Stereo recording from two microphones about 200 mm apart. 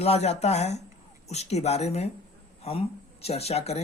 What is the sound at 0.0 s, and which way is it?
Speech, 30° left (ahead or behind).